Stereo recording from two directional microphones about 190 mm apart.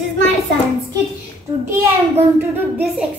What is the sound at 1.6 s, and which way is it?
A child's voice, 10° right (ahead or behind).